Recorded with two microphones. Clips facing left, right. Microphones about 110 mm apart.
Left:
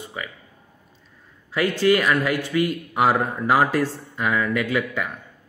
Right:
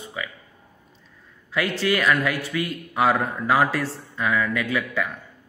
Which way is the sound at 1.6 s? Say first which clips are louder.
Left 4 dB; 20° left (ahead or behind).